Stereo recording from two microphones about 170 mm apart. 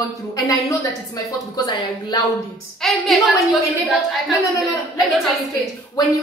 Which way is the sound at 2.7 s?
Centre (ahead or behind).